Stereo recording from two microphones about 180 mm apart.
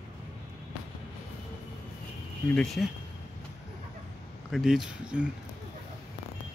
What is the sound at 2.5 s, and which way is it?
Speech, centre (ahead or behind).